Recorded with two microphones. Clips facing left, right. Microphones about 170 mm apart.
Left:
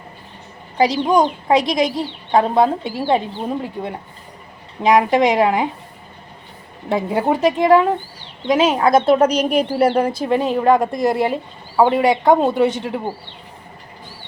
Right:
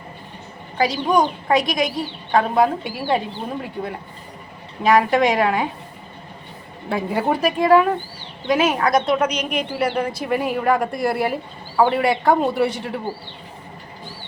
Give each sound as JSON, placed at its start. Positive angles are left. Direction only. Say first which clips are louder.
{"t": 0.8, "sound": "a woman's voice", "louder": "left 3 dB", "side_deg": 20}
{"t": 4.8, "sound": "a woman's voice", "louder": "left 2 dB", "side_deg": 20}
{"t": 6.8, "sound": "a woman's voice", "louder": "left 3 dB", "side_deg": 25}